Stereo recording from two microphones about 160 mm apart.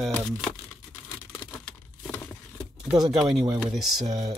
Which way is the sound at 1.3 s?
5° left (ahead or behind).